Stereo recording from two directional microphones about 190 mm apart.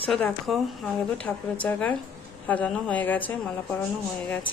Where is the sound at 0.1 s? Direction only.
Centre (ahead or behind).